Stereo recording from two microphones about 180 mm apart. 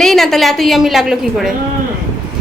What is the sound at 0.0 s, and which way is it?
A woman's voice, centre (ahead or behind).